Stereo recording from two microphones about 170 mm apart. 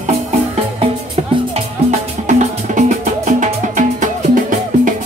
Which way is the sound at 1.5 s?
45° right (ahead or behind).